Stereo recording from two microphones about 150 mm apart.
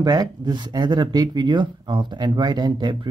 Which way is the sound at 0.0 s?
30° right (ahead or behind).